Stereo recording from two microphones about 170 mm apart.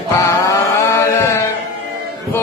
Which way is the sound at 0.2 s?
15° left (ahead or behind).